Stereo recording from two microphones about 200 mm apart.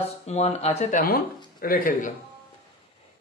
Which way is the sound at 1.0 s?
45° left (ahead or behind).